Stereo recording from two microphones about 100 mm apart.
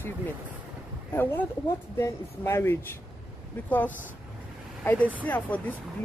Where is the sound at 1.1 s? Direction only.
20° left (ahead or behind).